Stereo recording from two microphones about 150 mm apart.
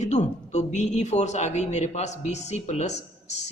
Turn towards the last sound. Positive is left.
turn(degrees=50)  # may be behind; listen again after turning